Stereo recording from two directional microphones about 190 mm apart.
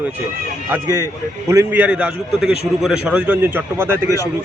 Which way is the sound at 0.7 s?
15° right (ahead or behind).